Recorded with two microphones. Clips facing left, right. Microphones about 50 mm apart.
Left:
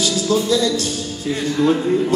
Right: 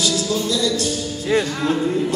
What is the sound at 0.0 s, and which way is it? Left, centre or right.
Music, left.